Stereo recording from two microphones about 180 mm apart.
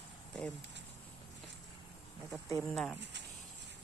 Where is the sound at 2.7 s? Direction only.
5° left (ahead or behind).